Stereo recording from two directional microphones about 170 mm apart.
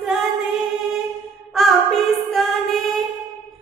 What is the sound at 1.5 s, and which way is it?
Singing, centre (ahead or behind).